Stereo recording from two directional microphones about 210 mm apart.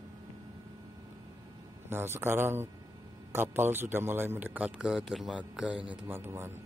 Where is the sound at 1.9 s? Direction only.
10° right (ahead or behind).